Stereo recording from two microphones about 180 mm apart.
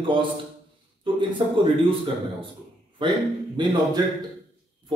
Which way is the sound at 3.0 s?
25° right (ahead or behind).